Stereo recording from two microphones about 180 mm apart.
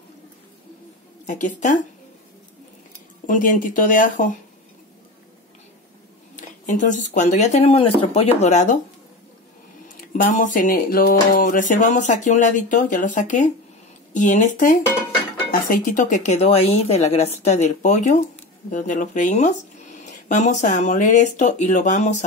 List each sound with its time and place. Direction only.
1.2 s speech: 45° left (ahead or behind)
3.3 s speech: 50° left (ahead or behind)
6.3 s speech: 45° left (ahead or behind)
9.9 s speech: 45° left (ahead or behind)